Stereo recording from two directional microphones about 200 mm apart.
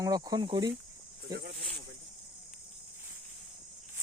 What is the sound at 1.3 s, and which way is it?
Speech, 45° right (ahead or behind).